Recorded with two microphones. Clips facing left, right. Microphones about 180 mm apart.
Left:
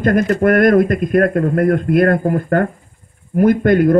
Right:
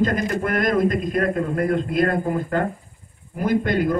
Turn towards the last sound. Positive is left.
turn(degrees=55)  # may be behind; listen again after turning